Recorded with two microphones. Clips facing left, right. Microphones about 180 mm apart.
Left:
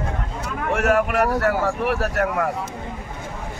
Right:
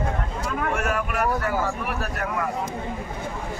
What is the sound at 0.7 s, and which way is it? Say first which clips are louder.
Speech: left 7 dB; 75° left (ahead or behind).